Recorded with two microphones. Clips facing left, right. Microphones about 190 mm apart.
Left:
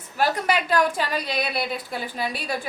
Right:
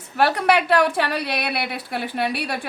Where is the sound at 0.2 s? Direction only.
65° right (ahead or behind).